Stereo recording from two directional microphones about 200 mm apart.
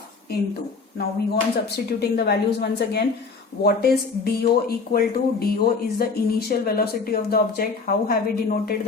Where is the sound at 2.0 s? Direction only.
55° left (ahead or behind).